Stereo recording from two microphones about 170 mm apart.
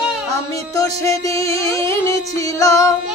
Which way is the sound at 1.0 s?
20° left (ahead or behind).